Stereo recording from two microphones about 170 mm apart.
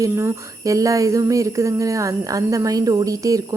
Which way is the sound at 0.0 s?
20° right (ahead or behind).